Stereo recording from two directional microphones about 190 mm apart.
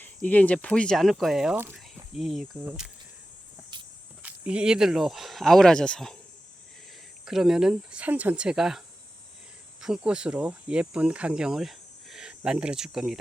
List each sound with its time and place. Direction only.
0.0 s speech: 10° left (ahead or behind)
3.7 s walk: 25° right (ahead or behind)
4.2 s speech: 5° right (ahead or behind)
7.3 s speech: centre (ahead or behind)
9.8 s speech: 5° right (ahead or behind)